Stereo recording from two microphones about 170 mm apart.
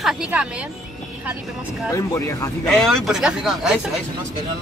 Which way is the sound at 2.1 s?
15° left (ahead or behind).